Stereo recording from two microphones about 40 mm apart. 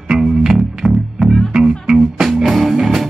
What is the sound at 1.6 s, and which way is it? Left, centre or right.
Music, centre.